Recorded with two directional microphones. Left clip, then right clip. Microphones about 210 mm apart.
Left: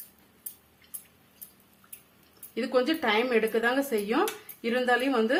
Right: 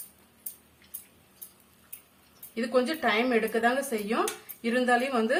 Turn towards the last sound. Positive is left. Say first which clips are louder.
# even
turn(degrees=25)  # may be behind; listen again after turning